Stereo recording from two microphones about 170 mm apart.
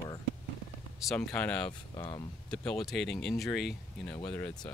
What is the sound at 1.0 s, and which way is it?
Speech, 5° left (ahead or behind).